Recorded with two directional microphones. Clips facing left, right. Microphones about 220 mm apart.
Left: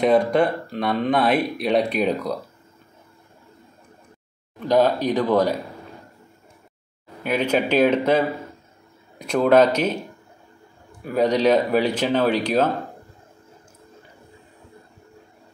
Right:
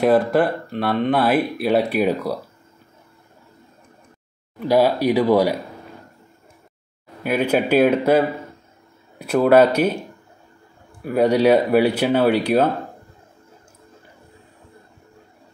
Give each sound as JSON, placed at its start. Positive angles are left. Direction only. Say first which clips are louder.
{"t": 0.0, "sound": "speech", "louder": "right 1 dB", "side_deg": -5}
{"t": 4.6, "sound": "speech", "louder": "right 1 dB", "side_deg": -10}
{"t": 7.2, "sound": "speech", "louder": "right 2 dB", "side_deg": -10}
{"t": 11.1, "sound": "speech", "louder": "right 3 dB", "side_deg": -10}